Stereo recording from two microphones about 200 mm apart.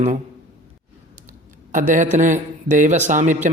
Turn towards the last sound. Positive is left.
turn(degrees=-40)  # may be behind; listen again after turning